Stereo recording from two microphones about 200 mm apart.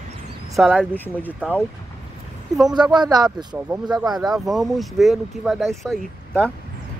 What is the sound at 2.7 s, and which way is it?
A man's voice, 20° right (ahead or behind).